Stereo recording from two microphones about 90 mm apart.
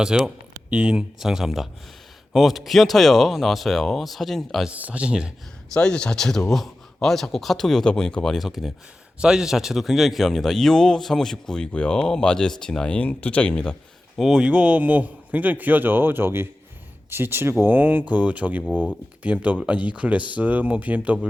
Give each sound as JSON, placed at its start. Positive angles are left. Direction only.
{"t": 0.0, "sound": "speech", "side_deg": -10}
{"t": 4.7, "sound": "speech", "side_deg": -15}
{"t": 5.7, "sound": "speech", "side_deg": 10}
{"t": 14.2, "sound": "speech", "side_deg": 0}
{"t": 14.4, "sound": "a man's voice", "side_deg": -15}
{"t": 18.6, "sound": "speech", "side_deg": 15}
{"t": 19.2, "sound": "speech", "side_deg": -15}